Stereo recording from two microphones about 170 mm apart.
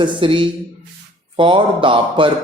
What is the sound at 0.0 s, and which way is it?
A man's voice, 30° right (ahead or behind).